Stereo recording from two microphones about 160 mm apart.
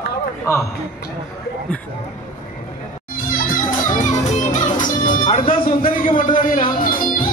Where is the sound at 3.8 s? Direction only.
55° left (ahead or behind).